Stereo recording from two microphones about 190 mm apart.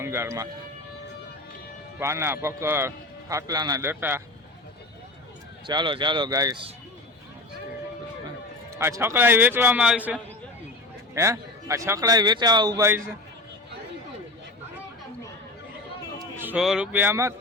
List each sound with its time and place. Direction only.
0.0 s speech: 15° right (ahead or behind)
2.0 s a man's voice: 15° right (ahead or behind)
5.6 s a man's voice: 25° right (ahead or behind)
8.7 s a man's voice: 15° right (ahead or behind)
16.1 s speech: 10° right (ahead or behind)